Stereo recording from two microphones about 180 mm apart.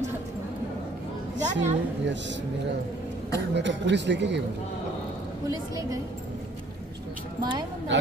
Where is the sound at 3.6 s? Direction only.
80° right.